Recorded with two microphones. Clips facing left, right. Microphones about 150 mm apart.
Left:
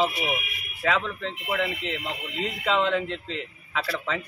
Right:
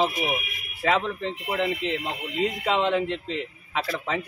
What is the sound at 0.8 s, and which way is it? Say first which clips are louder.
Speech: right 2 dB; 25° right (ahead or behind).